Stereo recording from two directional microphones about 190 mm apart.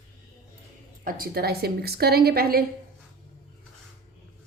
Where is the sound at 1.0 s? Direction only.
50° right (ahead or behind).